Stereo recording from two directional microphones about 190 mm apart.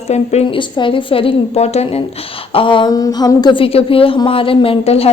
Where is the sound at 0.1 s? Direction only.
35° left (ahead or behind).